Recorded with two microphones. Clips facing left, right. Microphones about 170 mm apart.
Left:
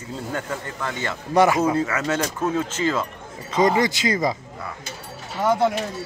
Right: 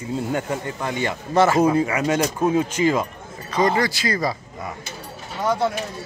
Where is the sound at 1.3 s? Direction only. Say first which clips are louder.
Left 1 dB; 15° left (ahead or behind).